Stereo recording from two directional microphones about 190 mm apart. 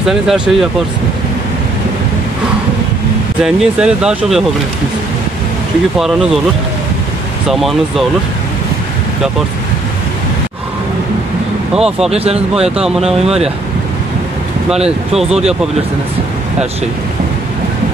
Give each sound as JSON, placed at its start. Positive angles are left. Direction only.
{"t": 0.0, "sound": "speech", "side_deg": 0}
{"t": 3.4, "sound": "speech", "side_deg": -5}
{"t": 5.9, "sound": "speech", "side_deg": 0}
{"t": 7.4, "sound": "speech", "side_deg": 0}
{"t": 11.7, "sound": "speech", "side_deg": -5}
{"t": 12.1, "sound": "speech", "side_deg": -35}
{"t": 12.7, "sound": "speech", "side_deg": -5}
{"t": 13.0, "sound": "speech", "side_deg": -35}